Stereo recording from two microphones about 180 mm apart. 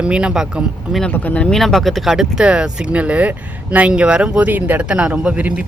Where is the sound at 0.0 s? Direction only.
5° right (ahead or behind).